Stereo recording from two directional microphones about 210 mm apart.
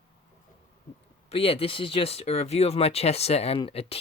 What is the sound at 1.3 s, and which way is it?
Speech, 25° left (ahead or behind).